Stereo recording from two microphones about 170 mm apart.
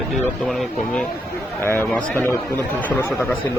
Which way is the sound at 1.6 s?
10° left (ahead or behind).